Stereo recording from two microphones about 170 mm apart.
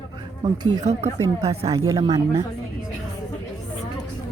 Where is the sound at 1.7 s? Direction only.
20° right (ahead or behind).